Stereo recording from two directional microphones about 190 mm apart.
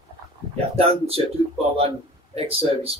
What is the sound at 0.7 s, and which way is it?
Speech, 30° right (ahead or behind).